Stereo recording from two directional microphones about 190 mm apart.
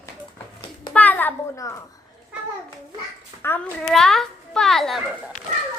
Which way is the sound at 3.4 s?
5° left (ahead or behind).